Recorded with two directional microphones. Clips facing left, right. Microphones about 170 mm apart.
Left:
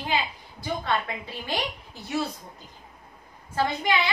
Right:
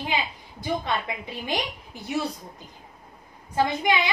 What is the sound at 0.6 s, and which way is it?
A woman's voice, 15° right (ahead or behind).